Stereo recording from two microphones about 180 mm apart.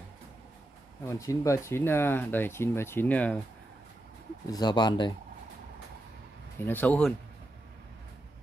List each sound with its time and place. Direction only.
1.0 s speech: 20° left (ahead or behind)
4.5 s speech: 20° left (ahead or behind)
6.6 s speech: 10° left (ahead or behind)